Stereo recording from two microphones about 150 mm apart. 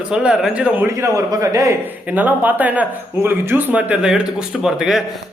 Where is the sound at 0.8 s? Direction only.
20° right (ahead or behind); by 5.0 s 5° right (ahead or behind).